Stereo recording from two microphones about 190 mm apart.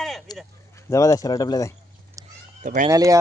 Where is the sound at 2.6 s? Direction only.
40° right (ahead or behind).